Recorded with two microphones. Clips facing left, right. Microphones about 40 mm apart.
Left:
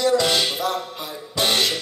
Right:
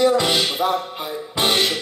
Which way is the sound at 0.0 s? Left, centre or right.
Centre.